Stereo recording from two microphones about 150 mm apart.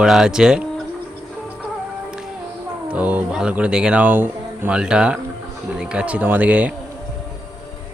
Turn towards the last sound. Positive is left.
turn(degrees=-10)  # may be behind; listen again after turning